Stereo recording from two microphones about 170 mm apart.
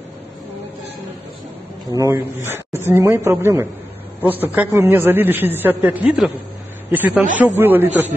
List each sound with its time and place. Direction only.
2.0 s a man's voice: 15° right (ahead or behind)